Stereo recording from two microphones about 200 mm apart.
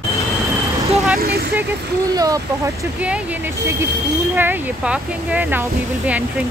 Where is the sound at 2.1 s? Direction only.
15° right (ahead or behind).